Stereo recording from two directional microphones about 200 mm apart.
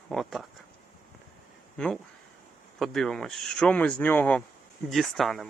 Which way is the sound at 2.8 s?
Centre (ahead or behind).